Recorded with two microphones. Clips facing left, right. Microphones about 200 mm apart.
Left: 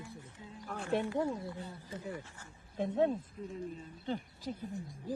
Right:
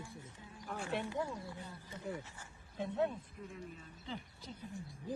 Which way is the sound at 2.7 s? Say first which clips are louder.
Left 5 dB; 35° left (ahead or behind).